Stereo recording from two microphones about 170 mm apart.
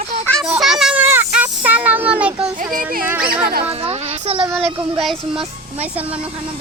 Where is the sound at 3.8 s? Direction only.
35° right (ahead or behind).